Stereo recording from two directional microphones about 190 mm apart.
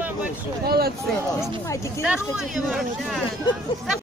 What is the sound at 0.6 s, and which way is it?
Speech, 55° right (ahead or behind).